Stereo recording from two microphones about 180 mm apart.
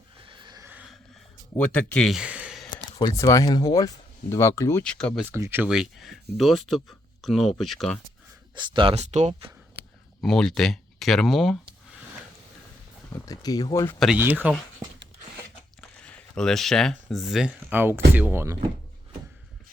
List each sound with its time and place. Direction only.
0.3 s a sound: 25° right (ahead or behind)
0.7 s a sound: 5° right (ahead or behind)
1.5 s speech: 10° left (ahead or behind)
3.0 s speech: 20° left (ahead or behind)
4.8 s speech: 5° left (ahead or behind)
5.3 s speech: 15° right (ahead or behind); by 8.0 s 5° left (ahead or behind)
8.5 s speech: 30° right (ahead or behind)
10.2 s speech: centre (ahead or behind)
13.2 s speech: 20° left (ahead or behind)
14.2 s speech: 10° right (ahead or behind)
16.0 s speech: 5° left (ahead or behind); by 18.5 s 10° right (ahead or behind)